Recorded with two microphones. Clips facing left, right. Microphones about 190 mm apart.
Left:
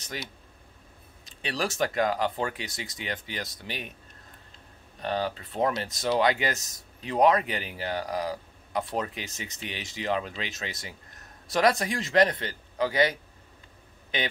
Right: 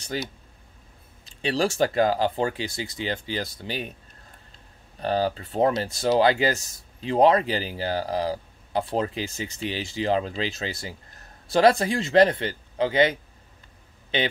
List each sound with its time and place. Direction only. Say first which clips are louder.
0.1 s speech: right 7 dB; 30° right (ahead or behind)
1.4 s speech: right 6 dB; 30° right (ahead or behind)
5.0 s speech: right 5 dB; 35° right (ahead or behind)